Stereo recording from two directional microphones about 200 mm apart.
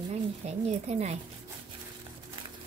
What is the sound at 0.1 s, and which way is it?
Speech, 30° right (ahead or behind).